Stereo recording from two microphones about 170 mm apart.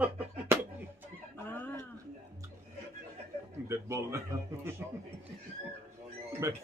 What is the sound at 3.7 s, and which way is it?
A man's voice, 15° right (ahead or behind).